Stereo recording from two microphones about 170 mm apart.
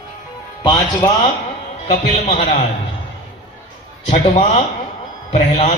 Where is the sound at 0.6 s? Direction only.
30° left (ahead or behind).